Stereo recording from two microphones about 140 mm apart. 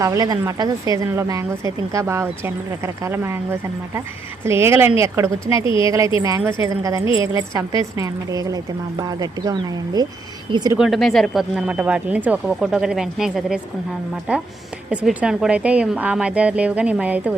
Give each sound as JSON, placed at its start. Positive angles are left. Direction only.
{"t": 0.0, "sound": "a woman's voice", "side_deg": -25}
{"t": 10.8, "sound": "speech", "side_deg": 0}
{"t": 14.8, "sound": "speech", "side_deg": -5}